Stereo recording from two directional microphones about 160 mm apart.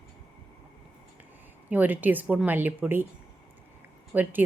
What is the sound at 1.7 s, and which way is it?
Speech, 10° right (ahead or behind).